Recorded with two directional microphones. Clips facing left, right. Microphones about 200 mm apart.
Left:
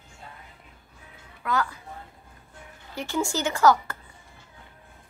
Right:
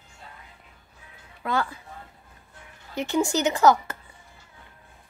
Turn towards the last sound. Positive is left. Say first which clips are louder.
# right 1 dB
turn(degrees=-20)  # may be behind; listen again after turning